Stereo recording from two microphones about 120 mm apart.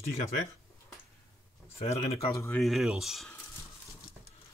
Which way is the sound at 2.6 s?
Centre (ahead or behind).